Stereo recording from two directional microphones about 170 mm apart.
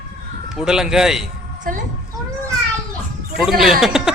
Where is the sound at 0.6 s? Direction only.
5° right (ahead or behind).